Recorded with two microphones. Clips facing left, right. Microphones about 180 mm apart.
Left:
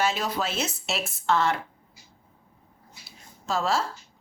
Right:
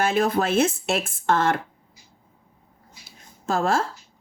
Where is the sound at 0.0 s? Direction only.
55° right (ahead or behind).